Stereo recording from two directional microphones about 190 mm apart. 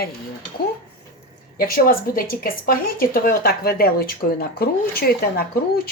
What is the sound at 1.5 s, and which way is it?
Speech, 50° left (ahead or behind).